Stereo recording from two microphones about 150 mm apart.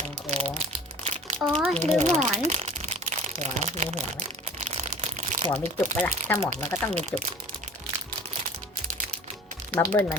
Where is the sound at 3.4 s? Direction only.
50° right (ahead or behind).